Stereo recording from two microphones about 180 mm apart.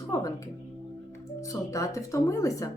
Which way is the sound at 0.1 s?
20° left (ahead or behind).